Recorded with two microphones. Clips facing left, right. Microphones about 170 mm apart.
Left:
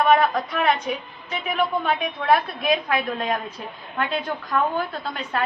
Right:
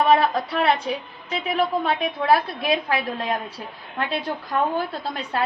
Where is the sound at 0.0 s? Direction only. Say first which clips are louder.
Even; 30° right (ahead or behind).